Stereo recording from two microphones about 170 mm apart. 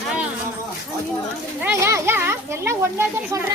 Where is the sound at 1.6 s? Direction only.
15° right (ahead or behind).